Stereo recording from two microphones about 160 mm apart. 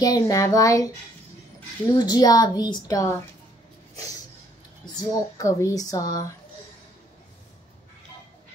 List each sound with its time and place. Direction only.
0.0 s speech: 20° left (ahead or behind)
2.0 s speech: 25° left (ahead or behind)
4.9 s speech: 20° left (ahead or behind)